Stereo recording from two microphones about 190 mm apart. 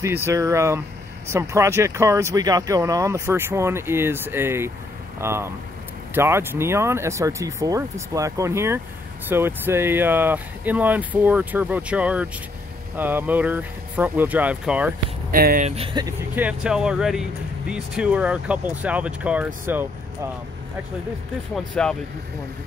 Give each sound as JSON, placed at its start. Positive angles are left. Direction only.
{"t": 0.0, "sound": "speech", "side_deg": -15}
{"t": 15.3, "sound": "speech", "side_deg": -50}
{"t": 15.7, "sound": "speech", "side_deg": -25}
{"t": 16.3, "sound": "speech", "side_deg": -5}
{"t": 21.5, "sound": "speech", "side_deg": 5}